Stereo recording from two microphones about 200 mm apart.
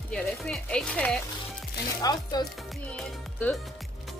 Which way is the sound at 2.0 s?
20° left (ahead or behind).